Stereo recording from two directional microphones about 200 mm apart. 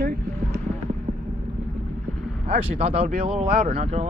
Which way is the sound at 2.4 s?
30° right (ahead or behind).